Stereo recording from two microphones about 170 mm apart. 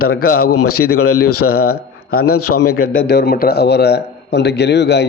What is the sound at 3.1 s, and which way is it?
Speech, 70° left (ahead or behind).